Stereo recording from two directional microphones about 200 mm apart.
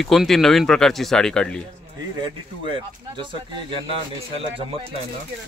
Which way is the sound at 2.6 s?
25° right (ahead or behind).